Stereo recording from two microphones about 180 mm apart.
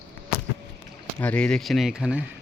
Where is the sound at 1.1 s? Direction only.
5° left (ahead or behind).